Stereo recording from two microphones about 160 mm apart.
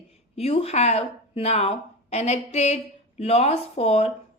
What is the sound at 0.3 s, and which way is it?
A woman's voice, 40° left (ahead or behind).